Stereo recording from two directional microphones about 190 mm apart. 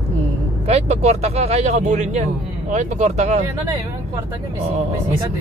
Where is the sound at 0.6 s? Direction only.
35° right (ahead or behind).